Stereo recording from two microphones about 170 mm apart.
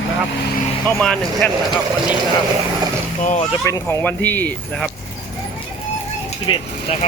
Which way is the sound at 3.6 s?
15° left (ahead or behind).